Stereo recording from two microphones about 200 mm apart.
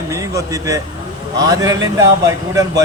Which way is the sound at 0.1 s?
15° right (ahead or behind).